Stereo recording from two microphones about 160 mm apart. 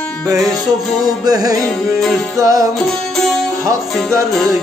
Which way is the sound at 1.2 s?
25° right (ahead or behind).